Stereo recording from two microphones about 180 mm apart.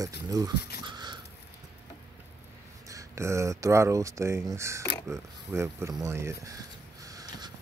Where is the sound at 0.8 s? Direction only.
25° right (ahead or behind).